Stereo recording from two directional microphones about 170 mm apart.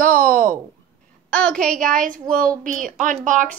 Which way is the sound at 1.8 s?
50° right (ahead or behind).